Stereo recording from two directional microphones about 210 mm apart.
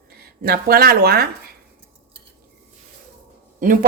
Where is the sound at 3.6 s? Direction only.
40° right (ahead or behind).